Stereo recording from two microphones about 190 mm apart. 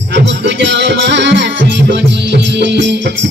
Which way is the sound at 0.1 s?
65° right (ahead or behind).